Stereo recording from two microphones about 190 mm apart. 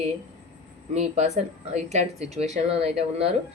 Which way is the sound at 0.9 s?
35° right (ahead or behind).